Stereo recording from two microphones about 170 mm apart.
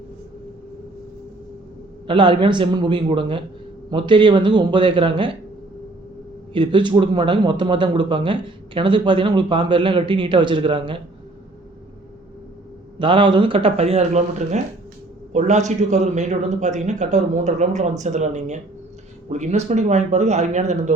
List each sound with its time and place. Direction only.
2.0 s speech: 30° right (ahead or behind)
6.5 s speech: 30° right (ahead or behind)
13.0 s a man's voice: 30° right (ahead or behind)